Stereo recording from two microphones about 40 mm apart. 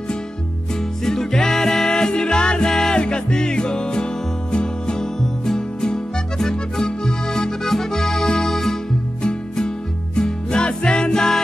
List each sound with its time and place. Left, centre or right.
1.0 s music: centre
6.4 s accordion: centre
8.4 s music: centre
9.2 s music: left